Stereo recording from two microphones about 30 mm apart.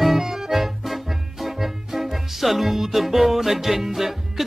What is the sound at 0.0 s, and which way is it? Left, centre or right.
Music, centre.